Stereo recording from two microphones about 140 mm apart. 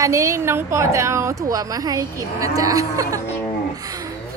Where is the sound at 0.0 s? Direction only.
20° right (ahead or behind).